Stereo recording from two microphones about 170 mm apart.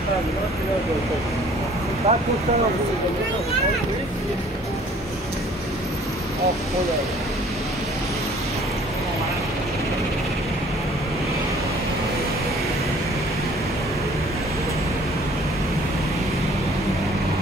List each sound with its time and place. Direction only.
2.1 s speech: 40° right (ahead or behind)